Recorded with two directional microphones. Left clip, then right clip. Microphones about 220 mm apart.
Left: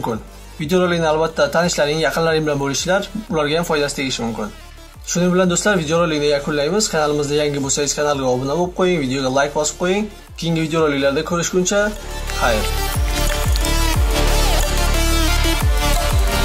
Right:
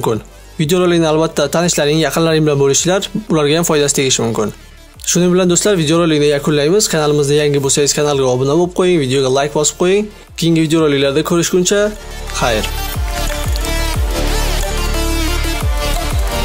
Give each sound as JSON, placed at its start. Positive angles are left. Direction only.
{"t": 0.6, "sound": "speech", "side_deg": -50}